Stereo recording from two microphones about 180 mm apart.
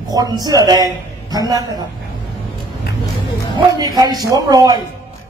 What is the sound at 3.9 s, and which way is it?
Speech, 20° right (ahead or behind).